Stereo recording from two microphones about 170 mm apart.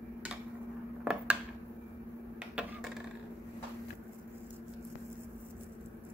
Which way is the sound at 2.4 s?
5° right (ahead or behind).